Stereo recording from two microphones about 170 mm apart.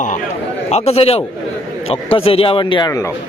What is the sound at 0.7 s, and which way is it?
A man's voice, 35° left (ahead or behind).